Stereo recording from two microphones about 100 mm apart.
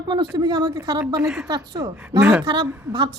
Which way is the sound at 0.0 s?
45° right (ahead or behind).